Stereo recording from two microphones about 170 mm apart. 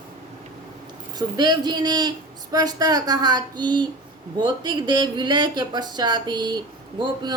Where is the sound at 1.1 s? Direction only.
25° right (ahead or behind).